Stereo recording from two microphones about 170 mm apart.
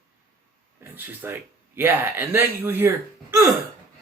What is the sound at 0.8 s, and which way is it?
Speech, 10° right (ahead or behind).